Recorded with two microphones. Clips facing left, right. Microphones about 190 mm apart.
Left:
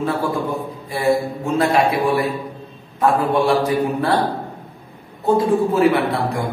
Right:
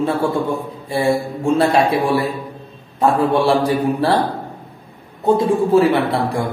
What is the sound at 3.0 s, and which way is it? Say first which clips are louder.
A man's voice: right 2 dB; 30° right (ahead or behind).